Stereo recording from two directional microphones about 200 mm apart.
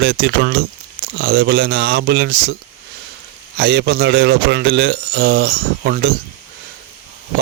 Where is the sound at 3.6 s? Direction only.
55° right (ahead or behind).